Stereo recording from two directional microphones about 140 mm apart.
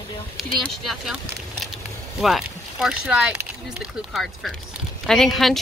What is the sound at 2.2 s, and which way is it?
Speech, centre (ahead or behind).